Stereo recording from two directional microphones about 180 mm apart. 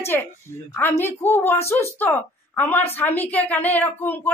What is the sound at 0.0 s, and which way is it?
A woman's voice, 10° left (ahead or behind).